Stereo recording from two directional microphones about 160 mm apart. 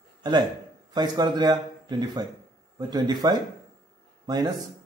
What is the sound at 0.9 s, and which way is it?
A man's voice, 25° right (ahead or behind).